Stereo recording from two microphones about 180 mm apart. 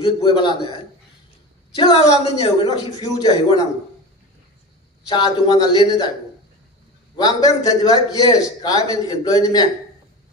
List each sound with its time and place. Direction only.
0.0 s a man's voice: 25° left (ahead or behind)
1.8 s a man's voice: 25° left (ahead or behind)
2.4 s a man's voice: 35° left (ahead or behind)
3.0 s a man's voice: 20° left (ahead or behind)
5.0 s a man's voice: 25° left (ahead or behind)
7.2 s a man's voice: 20° left (ahead or behind)